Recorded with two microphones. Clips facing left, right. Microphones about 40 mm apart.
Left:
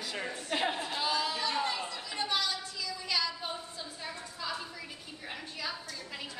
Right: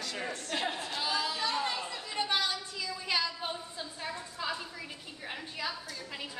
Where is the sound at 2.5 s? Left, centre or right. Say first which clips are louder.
Right 1 dB; right.